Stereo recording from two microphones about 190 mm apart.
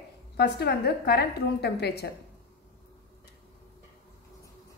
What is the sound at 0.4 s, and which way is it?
A woman's voice, 60° left (ahead or behind).